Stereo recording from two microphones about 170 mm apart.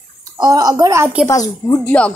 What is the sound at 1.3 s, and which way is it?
Speech, 20° left (ahead or behind).